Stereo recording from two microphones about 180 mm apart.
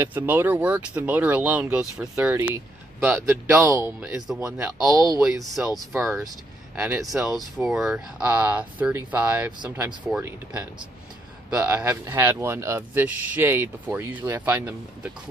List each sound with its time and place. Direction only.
0.0 s speech: 10° right (ahead or behind)
5.2 s speech: centre (ahead or behind)
5.6 s speech: 15° right (ahead or behind)
7.1 s speech: centre (ahead or behind)